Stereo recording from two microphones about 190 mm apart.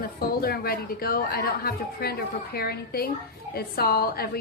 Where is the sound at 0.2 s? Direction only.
50° left (ahead or behind).